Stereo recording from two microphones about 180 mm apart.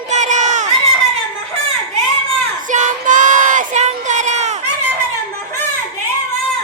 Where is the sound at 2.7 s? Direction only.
45° right (ahead or behind).